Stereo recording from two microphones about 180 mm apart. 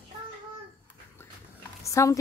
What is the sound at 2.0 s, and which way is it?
Speech, 15° left (ahead or behind).